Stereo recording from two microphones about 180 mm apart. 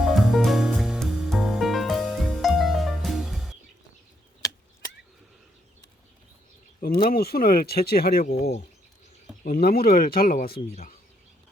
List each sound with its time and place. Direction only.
0.0 s music: centre (ahead or behind)
4.4 s chop: 20° left (ahead or behind)
6.8 s speech: 50° left (ahead or behind)